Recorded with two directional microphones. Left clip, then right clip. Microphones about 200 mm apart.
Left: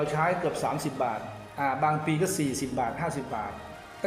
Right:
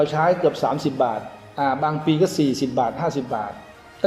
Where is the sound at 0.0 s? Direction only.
20° right (ahead or behind).